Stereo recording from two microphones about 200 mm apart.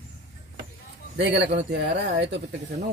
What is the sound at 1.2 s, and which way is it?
Speech, 60° right (ahead or behind).